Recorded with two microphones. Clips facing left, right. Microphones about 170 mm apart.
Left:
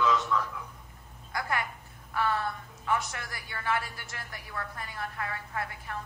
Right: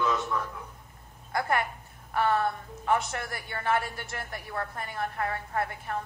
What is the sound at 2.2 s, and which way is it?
Speech, 45° right (ahead or behind).